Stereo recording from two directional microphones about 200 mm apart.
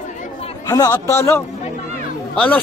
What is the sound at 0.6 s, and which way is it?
Speech, 20° left (ahead or behind).